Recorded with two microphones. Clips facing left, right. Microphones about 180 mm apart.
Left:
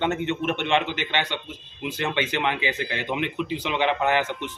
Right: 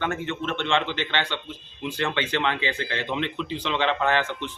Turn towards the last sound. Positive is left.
turn(degrees=15)  # may be behind; listen again after turning